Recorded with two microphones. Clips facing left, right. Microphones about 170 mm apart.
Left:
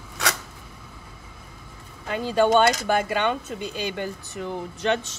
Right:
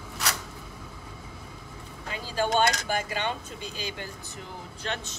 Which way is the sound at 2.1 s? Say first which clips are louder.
Left 7 dB; 60° left (ahead or behind).